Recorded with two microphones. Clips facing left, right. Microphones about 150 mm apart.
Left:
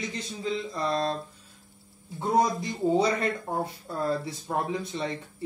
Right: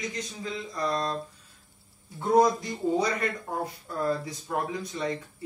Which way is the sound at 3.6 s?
25° left (ahead or behind).